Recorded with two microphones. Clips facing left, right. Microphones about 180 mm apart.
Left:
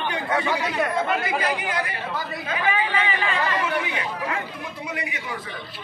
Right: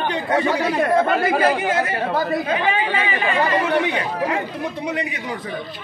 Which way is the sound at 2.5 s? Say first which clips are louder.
Right 4 dB; 25° right (ahead or behind).